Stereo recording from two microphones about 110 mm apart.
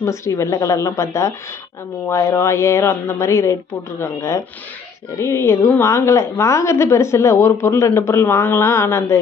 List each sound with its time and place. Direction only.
0.0 s a woman's voice: 25° left (ahead or behind)